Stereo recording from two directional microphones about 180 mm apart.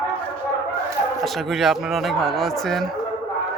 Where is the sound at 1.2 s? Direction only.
Centre (ahead or behind).